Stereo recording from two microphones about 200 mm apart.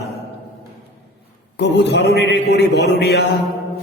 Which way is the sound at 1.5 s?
60° left (ahead or behind).